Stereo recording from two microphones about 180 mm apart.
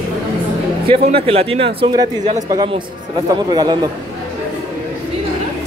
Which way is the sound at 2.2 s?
40° right (ahead or behind).